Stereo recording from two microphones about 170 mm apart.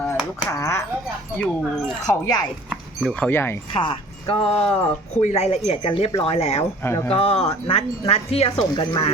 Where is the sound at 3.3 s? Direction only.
15° left (ahead or behind).